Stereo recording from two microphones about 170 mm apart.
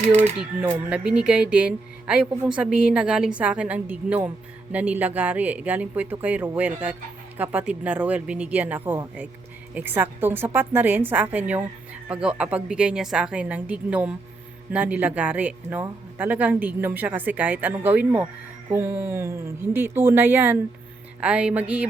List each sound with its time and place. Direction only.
0.1 s speech: 40° right (ahead or behind)
0.3 s speech: 5° right (ahead or behind)